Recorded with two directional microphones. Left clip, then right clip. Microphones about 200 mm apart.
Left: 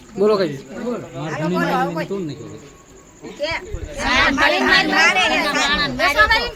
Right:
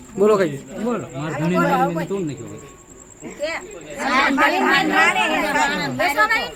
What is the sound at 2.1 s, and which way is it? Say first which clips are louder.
Speech: right 1 dB; 50° right (ahead or behind).